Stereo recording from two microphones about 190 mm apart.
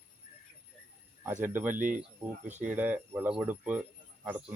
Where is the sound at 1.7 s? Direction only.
45° right (ahead or behind).